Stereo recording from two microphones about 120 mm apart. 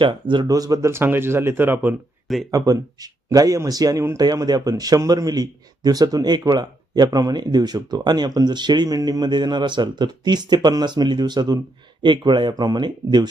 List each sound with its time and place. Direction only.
0.0 s speech: 40° right (ahead or behind); by 2.0 s 15° right (ahead or behind)
2.2 s speech: centre (ahead or behind)
2.5 s speech: 30° right (ahead or behind)